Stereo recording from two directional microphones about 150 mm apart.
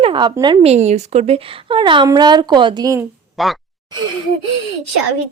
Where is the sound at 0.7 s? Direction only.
45° right (ahead or behind); by 3.1 s 20° right (ahead or behind).